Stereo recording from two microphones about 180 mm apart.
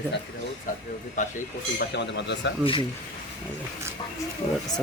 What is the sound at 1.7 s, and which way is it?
Speech, 70° left (ahead or behind).